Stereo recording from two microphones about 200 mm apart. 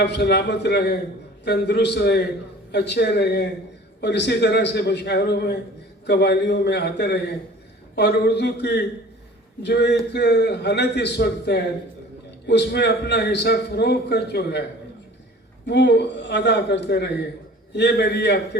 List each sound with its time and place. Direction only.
0.0 s a man's voice: 55° left (ahead or behind)
15.6 s a man's voice: 60° left (ahead or behind)